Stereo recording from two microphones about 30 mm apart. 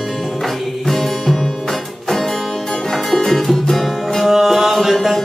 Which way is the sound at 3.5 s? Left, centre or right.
Centre.